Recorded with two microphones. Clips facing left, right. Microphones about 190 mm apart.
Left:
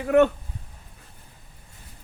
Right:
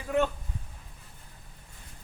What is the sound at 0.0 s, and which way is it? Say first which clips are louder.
Speech: left 9 dB; 65° left (ahead or behind).